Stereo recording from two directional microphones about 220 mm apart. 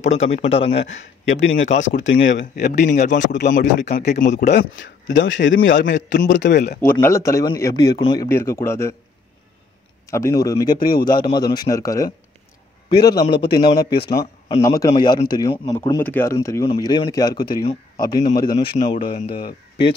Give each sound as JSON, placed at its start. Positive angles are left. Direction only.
{"t": 0.0, "sound": "speech", "side_deg": 30}
{"t": 1.4, "sound": "a man's voice", "side_deg": 60}
{"t": 3.4, "sound": "a man's voice", "side_deg": 35}
{"t": 4.5, "sound": "a man's voice", "side_deg": 55}
{"t": 6.8, "sound": "a man's voice", "side_deg": 10}
{"t": 10.0, "sound": "a man's voice", "side_deg": 15}
{"t": 12.9, "sound": "a man's voice", "side_deg": 50}
{"t": 13.6, "sound": "speech", "side_deg": 20}
{"t": 13.9, "sound": "a man's voice", "side_deg": 50}
{"t": 14.6, "sound": "a man's voice", "side_deg": 15}